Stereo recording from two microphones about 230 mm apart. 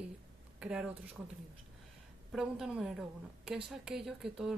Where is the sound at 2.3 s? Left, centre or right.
Centre.